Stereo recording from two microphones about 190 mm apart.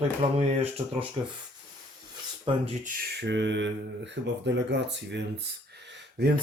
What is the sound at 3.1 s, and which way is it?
Speech, 70° right (ahead or behind).